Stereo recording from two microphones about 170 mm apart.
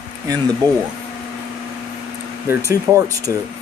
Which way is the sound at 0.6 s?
25° right (ahead or behind).